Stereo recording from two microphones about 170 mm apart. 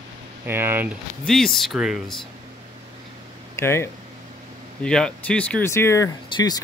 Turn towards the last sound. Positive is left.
turn(degrees=20)  # may be behind; listen again after turning